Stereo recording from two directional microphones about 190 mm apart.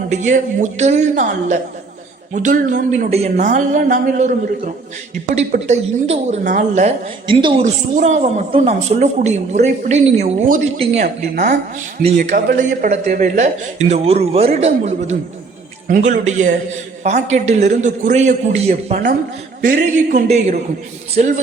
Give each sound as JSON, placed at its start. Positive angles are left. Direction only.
{"t": 0.1, "sound": "a woman's voice", "side_deg": -40}